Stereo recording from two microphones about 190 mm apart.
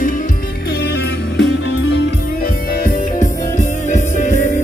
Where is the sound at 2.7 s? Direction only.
45° left (ahead or behind).